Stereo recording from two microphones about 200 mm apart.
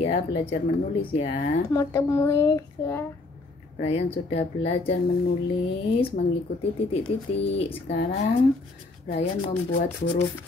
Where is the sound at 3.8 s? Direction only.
30° left (ahead or behind).